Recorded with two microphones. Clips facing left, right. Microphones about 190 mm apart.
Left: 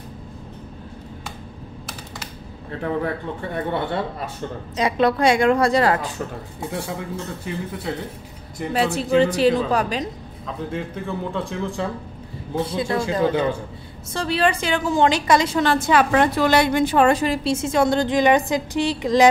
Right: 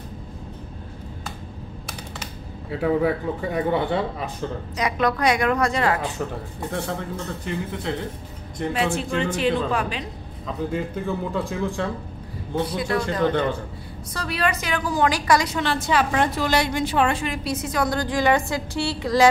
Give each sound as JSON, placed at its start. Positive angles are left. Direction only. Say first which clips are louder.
{"t": 2.7, "sound": "a man's voice", "louder": "right 3 dB", "side_deg": -5}
{"t": 4.7, "sound": "a woman's voice", "louder": "left 4 dB", "side_deg": 30}
{"t": 6.7, "sound": "speech", "louder": "right 1 dB", "side_deg": 10}
{"t": 8.7, "sound": "speech", "louder": "left 7 dB", "side_deg": 35}
{"t": 10.4, "sound": "speech", "louder": "right 2 dB", "side_deg": 0}
{"t": 12.6, "sound": "a woman's voice", "louder": "left 2 dB", "side_deg": 25}
{"t": 13.2, "sound": "speech", "louder": "left 1 dB", "side_deg": 5}
{"t": 14.1, "sound": "a woman's voice", "louder": "left 5 dB", "side_deg": 30}
{"t": 15.6, "sound": "a woman's voice", "louder": "left 4 dB", "side_deg": 50}